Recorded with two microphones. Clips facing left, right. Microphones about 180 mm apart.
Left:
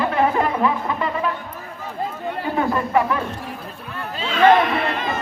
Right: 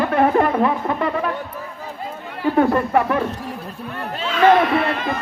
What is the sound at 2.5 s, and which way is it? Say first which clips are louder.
Speech: right 3 dB; 55° right (ahead or behind).